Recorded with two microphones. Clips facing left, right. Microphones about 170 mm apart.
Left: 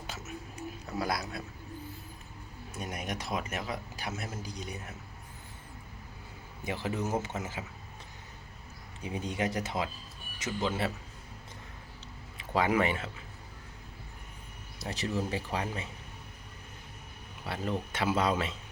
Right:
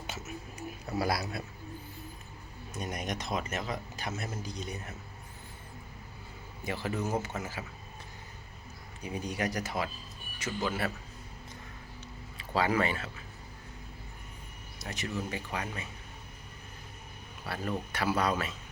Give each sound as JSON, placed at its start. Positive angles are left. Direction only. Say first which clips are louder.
{"t": 0.1, "sound": "a sound", "louder": "right 1 dB", "side_deg": -5}
{"t": 2.7, "sound": "speech", "louder": "right 1 dB", "side_deg": 5}
{"t": 6.7, "sound": "speech", "louder": "even", "side_deg": 20}
{"t": 9.0, "sound": "speech", "louder": "left 1 dB", "side_deg": 25}
{"t": 12.4, "sound": "speech", "louder": "left 1 dB", "side_deg": 20}
{"t": 14.8, "sound": "speech", "louder": "left 3 dB", "side_deg": 30}
{"t": 17.4, "sound": "speech", "louder": "left 1 dB", "side_deg": 20}